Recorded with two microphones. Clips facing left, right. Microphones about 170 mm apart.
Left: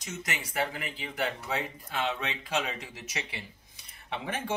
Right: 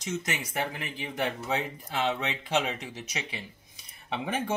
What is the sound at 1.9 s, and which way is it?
Speech, 20° right (ahead or behind).